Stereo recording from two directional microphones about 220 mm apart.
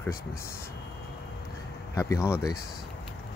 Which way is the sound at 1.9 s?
10° left (ahead or behind).